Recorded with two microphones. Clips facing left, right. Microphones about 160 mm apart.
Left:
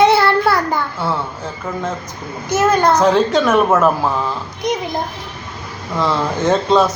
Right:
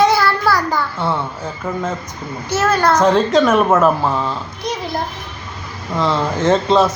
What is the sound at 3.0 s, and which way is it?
A woman's voice, centre (ahead or behind).